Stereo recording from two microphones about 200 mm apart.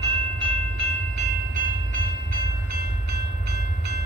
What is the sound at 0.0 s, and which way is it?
Train, 25° right (ahead or behind).